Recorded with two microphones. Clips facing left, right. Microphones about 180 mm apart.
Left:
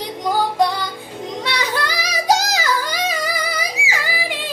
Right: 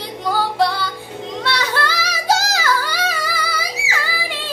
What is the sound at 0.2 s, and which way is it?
Music, 15° left (ahead or behind).